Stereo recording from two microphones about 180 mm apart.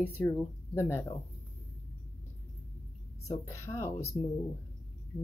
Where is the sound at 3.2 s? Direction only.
15° left (ahead or behind).